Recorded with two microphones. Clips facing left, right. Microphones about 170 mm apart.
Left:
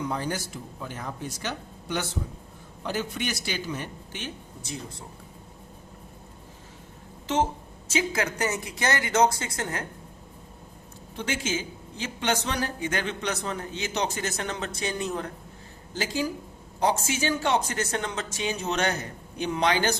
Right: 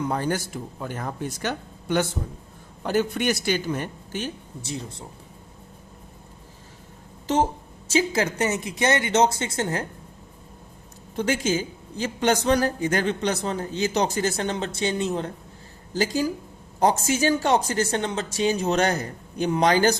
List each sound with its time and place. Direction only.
0.0 s speech: 50° right (ahead or behind)
4.6 s speech: 30° right (ahead or behind)
7.9 s speech: 30° right (ahead or behind)
11.2 s a woman's voice: 40° right (ahead or behind)
16.8 s a woman's voice: 40° right (ahead or behind)